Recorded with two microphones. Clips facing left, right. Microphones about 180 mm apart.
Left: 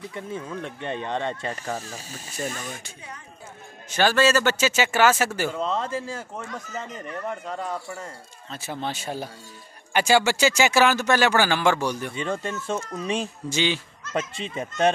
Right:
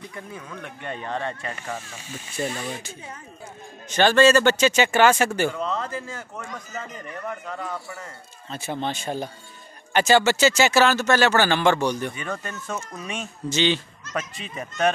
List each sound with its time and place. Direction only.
0.1 s speech: 25° left (ahead or behind)
1.5 s speech: 40° left (ahead or behind)
3.9 s speech: 5° left (ahead or behind)
5.5 s speech: 25° left (ahead or behind)
8.5 s speech: centre (ahead or behind)
12.2 s speech: 25° left (ahead or behind)
13.5 s speech: 10° left (ahead or behind)
14.1 s speech: 25° left (ahead or behind)